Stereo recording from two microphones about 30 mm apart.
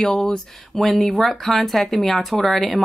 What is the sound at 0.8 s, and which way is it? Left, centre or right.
Speech, centre.